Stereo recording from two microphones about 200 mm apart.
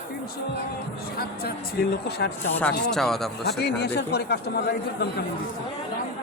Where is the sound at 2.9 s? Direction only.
Centre (ahead or behind).